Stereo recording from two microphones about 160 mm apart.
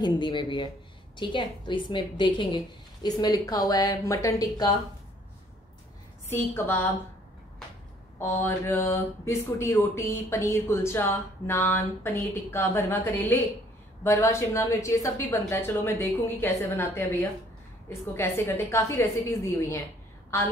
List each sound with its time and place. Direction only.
0.0 s a woman's voice: 30° left (ahead or behind)
6.2 s speech: 15° left (ahead or behind)
8.2 s speech: 15° left (ahead or behind)